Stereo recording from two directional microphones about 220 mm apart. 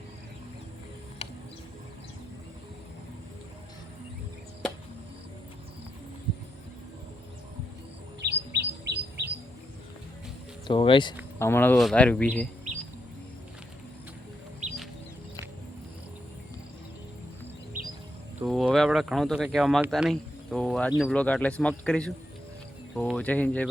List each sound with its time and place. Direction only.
8.2 s chirp: 50° right (ahead or behind)
10.7 s speech: 20° left (ahead or behind)
11.3 s speech: 10° left (ahead or behind)
17.7 s music: 40° right (ahead or behind)
18.3 s speech: centre (ahead or behind)